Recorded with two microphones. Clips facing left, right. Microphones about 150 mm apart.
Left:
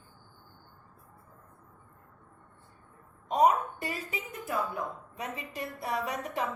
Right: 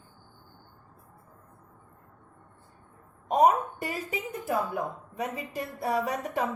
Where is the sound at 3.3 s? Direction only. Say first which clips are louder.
Right 2 dB; 50° right (ahead or behind).